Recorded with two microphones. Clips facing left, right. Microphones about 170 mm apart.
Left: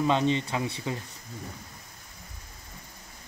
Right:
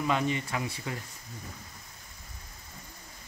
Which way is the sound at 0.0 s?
25° left (ahead or behind).